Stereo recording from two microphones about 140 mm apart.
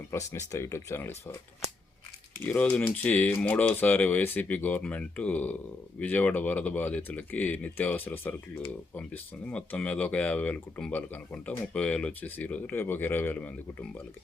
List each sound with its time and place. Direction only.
0.1 s speech: 20° left (ahead or behind)
2.4 s speech: 10° left (ahead or behind)